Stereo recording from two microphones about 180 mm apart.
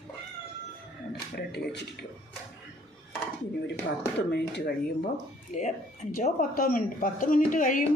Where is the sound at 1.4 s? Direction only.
65° left (ahead or behind).